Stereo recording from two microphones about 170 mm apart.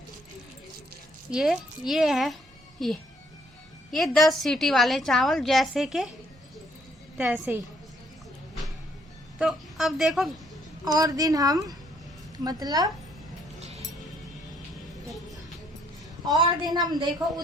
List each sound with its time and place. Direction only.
1.3 s a woman's voice: centre (ahead or behind)
7.2 s a woman's voice: 10° right (ahead or behind)
9.4 s a woman's voice: centre (ahead or behind)
10.8 s a woman's voice: 20° right (ahead or behind)
15.0 s music: centre (ahead or behind)
16.2 s a woman's voice: 25° right (ahead or behind)